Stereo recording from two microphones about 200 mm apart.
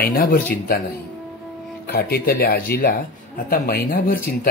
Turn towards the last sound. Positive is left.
turn(degrees=45)  # may be behind; listen again after turning